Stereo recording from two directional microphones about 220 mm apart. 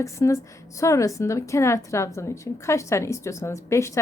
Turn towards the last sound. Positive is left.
turn(degrees=15)  # may be behind; listen again after turning